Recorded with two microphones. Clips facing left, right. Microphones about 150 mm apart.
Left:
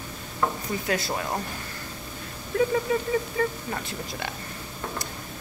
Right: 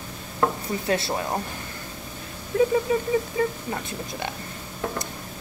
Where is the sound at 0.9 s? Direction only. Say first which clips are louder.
Right 3 dB; 25° right (ahead or behind).